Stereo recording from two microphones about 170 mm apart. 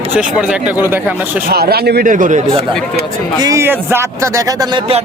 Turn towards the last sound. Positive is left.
turn(degrees=-20)  # may be behind; listen again after turning